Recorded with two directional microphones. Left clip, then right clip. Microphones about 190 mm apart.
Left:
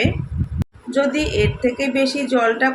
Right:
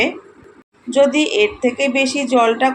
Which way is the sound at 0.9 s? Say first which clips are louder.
Right 5 dB; 15° right (ahead or behind).